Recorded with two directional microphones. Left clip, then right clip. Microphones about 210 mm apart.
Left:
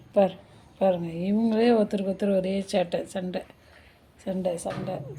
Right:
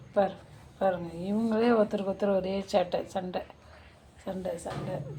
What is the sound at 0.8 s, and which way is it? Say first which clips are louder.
Speech: left 4 dB; 35° left (ahead or behind).